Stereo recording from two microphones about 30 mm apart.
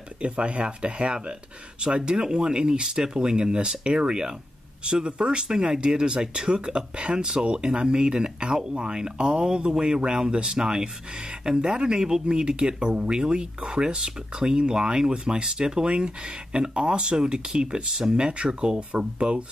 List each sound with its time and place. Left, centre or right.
0.2 s speech: right